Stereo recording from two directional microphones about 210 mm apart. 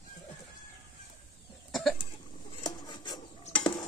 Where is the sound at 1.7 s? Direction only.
Centre (ahead or behind).